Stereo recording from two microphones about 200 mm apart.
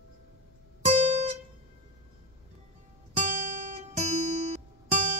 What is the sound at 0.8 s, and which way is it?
Guitar, 35° right (ahead or behind).